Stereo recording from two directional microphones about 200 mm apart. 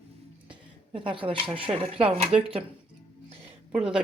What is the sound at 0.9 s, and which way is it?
Speech, 25° right (ahead or behind).